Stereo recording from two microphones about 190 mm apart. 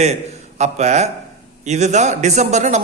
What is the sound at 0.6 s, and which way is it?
A man's voice, 35° right (ahead or behind).